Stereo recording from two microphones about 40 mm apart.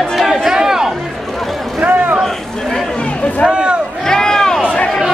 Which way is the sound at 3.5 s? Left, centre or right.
Right.